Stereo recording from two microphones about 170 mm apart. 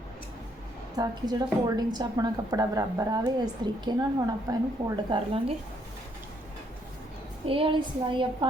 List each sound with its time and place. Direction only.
0.9 s a woman's voice: 20° right (ahead or behind)
7.4 s a woman's voice: 30° right (ahead or behind)